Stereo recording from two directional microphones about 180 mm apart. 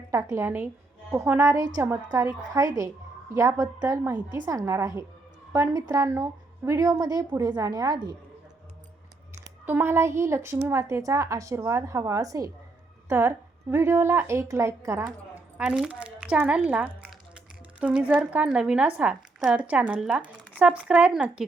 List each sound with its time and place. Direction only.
0.1 s a woman's voice: 15° right (ahead or behind)
9.4 s a woman's voice: 10° right (ahead or behind)
15.5 s speech: 5° right (ahead or behind)